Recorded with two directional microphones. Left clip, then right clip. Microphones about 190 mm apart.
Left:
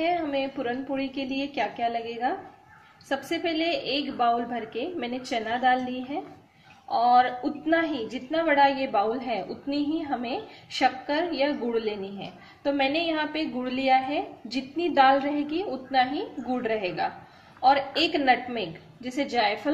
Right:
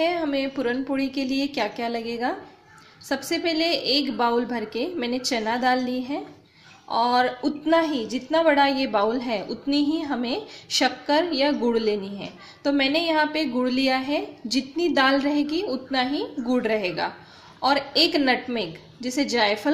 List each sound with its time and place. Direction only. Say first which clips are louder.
0.0 s a woman's voice: right 2 dB; 50° right (ahead or behind)